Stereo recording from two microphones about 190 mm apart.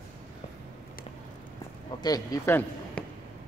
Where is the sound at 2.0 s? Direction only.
20° left (ahead or behind).